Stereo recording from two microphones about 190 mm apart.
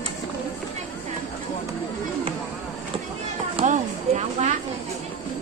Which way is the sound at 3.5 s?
40° right (ahead or behind).